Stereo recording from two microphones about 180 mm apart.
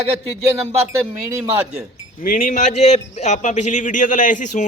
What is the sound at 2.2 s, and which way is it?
A man's voice, 50° left (ahead or behind).